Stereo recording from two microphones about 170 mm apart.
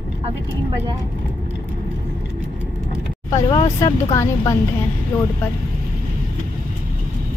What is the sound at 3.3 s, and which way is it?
Speech, 25° left (ahead or behind).